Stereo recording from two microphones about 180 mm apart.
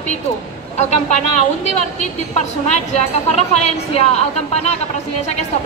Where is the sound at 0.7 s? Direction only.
40° left (ahead or behind).